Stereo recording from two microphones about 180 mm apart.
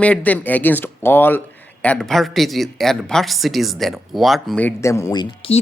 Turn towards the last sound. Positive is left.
turn(degrees=30)  # may be behind; listen again after turning